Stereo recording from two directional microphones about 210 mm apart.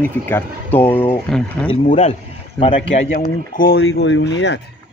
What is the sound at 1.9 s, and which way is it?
Speech, 30° left (ahead or behind).